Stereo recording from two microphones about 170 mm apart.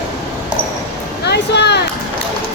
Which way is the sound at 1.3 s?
80° left.